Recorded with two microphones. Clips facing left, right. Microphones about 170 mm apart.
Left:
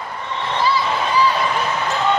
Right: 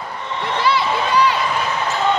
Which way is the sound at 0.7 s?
70° right (ahead or behind).